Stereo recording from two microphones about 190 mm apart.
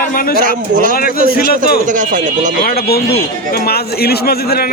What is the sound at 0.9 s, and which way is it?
Speech, 50° left (ahead or behind).